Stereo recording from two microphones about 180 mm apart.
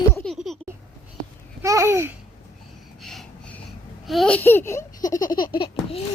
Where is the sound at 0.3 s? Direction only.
Centre (ahead or behind).